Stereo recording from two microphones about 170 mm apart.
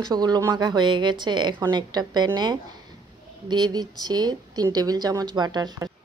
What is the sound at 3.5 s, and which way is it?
Speech, 25° right (ahead or behind).